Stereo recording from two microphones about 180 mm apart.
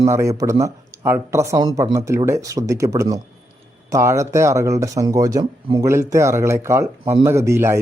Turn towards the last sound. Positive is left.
turn(degrees=-15)  # may be behind; listen again after turning